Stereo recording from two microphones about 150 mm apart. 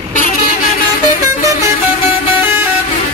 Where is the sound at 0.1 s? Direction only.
60° left (ahead or behind).